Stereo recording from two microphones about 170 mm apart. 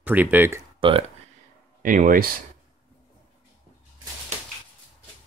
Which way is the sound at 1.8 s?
55° right (ahead or behind).